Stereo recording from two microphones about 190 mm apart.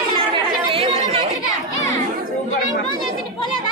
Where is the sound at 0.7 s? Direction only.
30° right (ahead or behind).